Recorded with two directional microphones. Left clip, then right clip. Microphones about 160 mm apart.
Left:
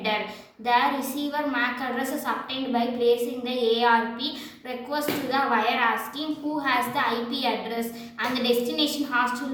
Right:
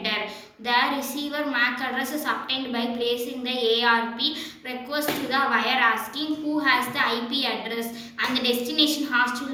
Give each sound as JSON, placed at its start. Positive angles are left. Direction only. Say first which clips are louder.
{"t": 0.6, "sound": "a woman's voice", "louder": "even", "side_deg": 50}